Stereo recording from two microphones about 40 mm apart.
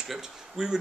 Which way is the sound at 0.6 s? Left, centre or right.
Centre.